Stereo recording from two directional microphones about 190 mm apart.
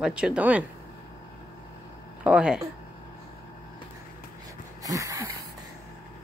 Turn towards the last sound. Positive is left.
turn(degrees=-15)  # may be behind; listen again after turning